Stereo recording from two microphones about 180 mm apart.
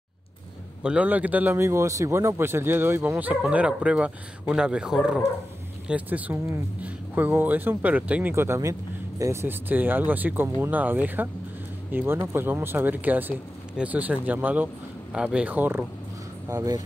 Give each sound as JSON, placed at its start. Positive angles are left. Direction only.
{"t": 0.8, "sound": "speech", "side_deg": -10}